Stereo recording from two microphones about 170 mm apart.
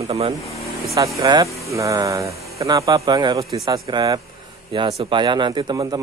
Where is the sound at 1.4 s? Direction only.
15° left (ahead or behind).